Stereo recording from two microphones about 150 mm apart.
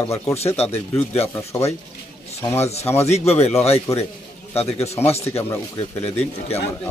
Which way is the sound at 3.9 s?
20° left (ahead or behind).